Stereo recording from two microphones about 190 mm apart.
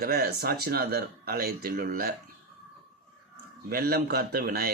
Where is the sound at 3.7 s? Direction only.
50° right (ahead or behind).